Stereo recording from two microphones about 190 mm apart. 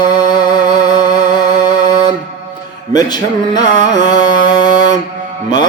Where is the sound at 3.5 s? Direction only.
20° left (ahead or behind).